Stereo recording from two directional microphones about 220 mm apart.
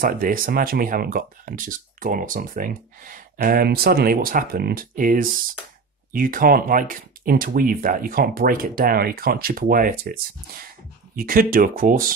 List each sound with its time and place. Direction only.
0.0 s speech: 40° right (ahead or behind)
11.1 s speech: 40° right (ahead or behind)